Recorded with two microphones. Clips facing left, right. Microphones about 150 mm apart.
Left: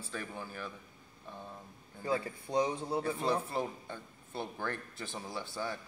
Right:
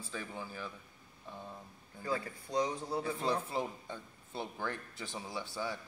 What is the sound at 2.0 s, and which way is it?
Speech, 25° left (ahead or behind).